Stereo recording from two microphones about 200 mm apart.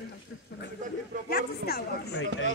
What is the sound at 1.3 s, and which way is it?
Speech, 50° left (ahead or behind).